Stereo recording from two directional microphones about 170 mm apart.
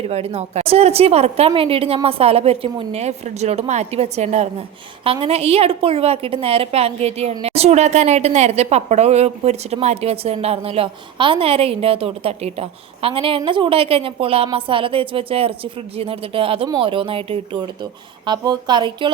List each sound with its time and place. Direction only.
0.0 s a woman's voice: 35° right (ahead or behind)